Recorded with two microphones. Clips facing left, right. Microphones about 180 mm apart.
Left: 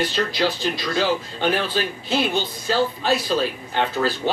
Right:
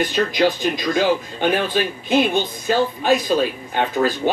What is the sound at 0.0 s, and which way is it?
Speech, 15° right (ahead or behind).